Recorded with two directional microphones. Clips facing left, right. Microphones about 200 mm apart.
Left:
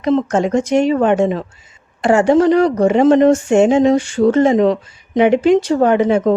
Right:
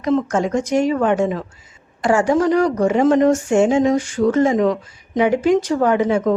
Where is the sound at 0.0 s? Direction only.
25° left (ahead or behind).